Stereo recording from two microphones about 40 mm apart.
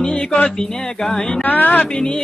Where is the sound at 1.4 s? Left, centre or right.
Left.